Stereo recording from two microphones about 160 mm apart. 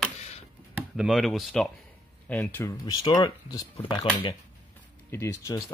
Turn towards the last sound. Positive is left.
turn(degrees=20)  # may be behind; listen again after turning